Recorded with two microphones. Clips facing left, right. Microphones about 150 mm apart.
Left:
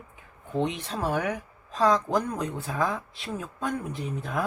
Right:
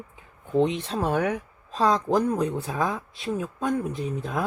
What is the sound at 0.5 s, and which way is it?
Speech, 20° right (ahead or behind).